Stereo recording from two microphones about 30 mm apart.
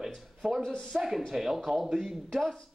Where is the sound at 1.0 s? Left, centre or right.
Centre.